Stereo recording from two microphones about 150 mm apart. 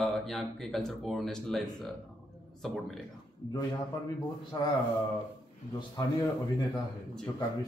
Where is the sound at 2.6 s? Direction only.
Centre (ahead or behind).